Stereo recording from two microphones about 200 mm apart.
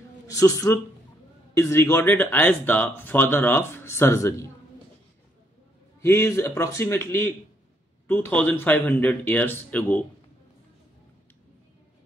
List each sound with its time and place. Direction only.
0.3 s speech: 15° left (ahead or behind)
5.9 s speech: 15° left (ahead or behind)